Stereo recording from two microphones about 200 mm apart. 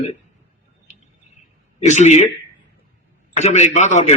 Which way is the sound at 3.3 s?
35° left (ahead or behind).